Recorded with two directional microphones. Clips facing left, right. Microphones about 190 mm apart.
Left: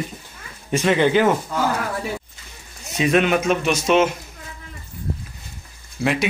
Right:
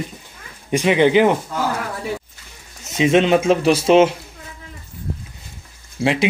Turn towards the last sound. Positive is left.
turn(degrees=-25)  # may be behind; listen again after turning